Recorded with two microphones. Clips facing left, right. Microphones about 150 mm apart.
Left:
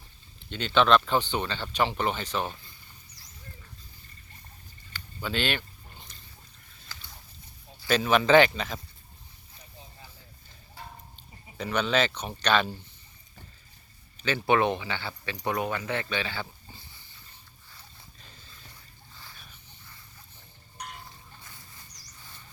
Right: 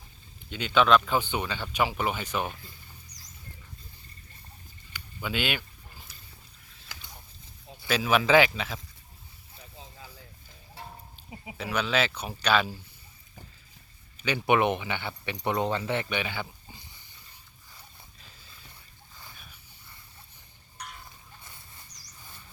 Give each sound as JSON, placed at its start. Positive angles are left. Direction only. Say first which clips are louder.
{"t": 0.5, "sound": "speech", "louder": "even", "side_deg": -5}
{"t": 4.9, "sound": "speech", "louder": "left 1 dB", "side_deg": -10}
{"t": 7.9, "sound": "speech", "louder": "left 2 dB", "side_deg": -5}
{"t": 11.2, "sound": "a sound", "louder": "right 5 dB", "side_deg": -5}
{"t": 11.5, "sound": "speech", "louder": "left 2 dB", "side_deg": -5}
{"t": 14.2, "sound": "speech", "louder": "even", "side_deg": -15}
{"t": 18.2, "sound": "a sound", "louder": "left 1 dB", "side_deg": 0}